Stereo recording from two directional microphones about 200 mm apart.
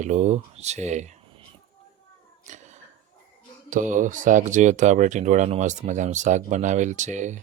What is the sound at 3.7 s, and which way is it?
Speech, 40° right (ahead or behind).